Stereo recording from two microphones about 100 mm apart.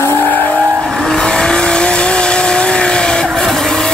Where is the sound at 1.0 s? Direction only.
5° left (ahead or behind).